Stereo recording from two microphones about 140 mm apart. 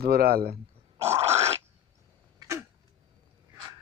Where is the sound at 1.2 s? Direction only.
50° right (ahead or behind).